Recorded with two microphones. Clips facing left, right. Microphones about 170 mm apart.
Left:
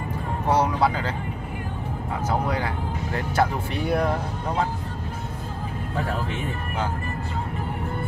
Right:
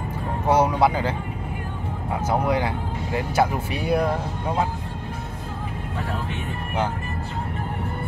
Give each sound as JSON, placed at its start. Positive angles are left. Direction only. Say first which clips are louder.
{"t": 0.5, "sound": "music", "louder": "right 3 dB", "side_deg": -15}
{"t": 2.5, "sound": "speech", "louder": "right 3 dB", "side_deg": -15}